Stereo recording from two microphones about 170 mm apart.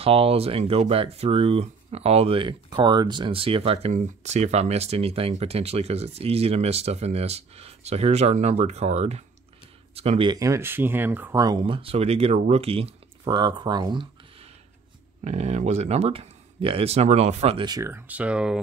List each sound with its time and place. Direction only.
0.0 s speech: 35° right (ahead or behind); by 11.4 s 10° right (ahead or behind)
11.4 s speech: 30° right (ahead or behind)
15.2 s speech: 40° right (ahead or behind)
17.6 s speech: 20° right (ahead or behind)